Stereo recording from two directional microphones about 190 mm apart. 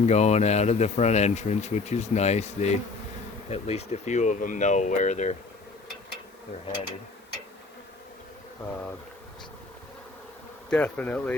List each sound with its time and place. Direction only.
0.0 s speech: 35° left (ahead or behind)
10.7 s speech: 5° left (ahead or behind)